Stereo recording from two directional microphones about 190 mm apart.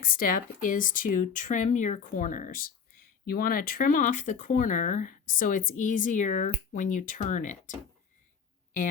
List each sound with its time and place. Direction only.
0.0 s speech: 45° left (ahead or behind)